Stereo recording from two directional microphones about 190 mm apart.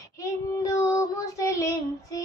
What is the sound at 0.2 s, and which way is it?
Child singing, 15° left (ahead or behind).